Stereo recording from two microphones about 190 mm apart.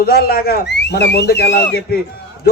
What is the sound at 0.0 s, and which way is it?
A man's voice, 55° left (ahead or behind).